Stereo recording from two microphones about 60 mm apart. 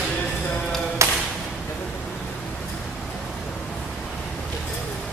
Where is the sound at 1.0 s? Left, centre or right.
Right.